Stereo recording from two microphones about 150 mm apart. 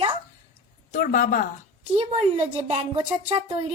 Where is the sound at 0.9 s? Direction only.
60° left (ahead or behind).